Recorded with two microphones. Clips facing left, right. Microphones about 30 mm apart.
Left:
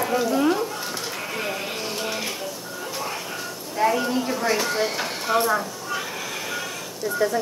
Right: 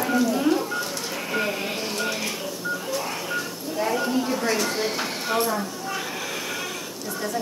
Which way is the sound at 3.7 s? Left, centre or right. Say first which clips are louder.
Left 3 dB; centre.